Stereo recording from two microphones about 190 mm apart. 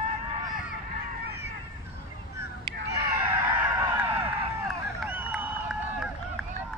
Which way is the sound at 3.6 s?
10° right (ahead or behind).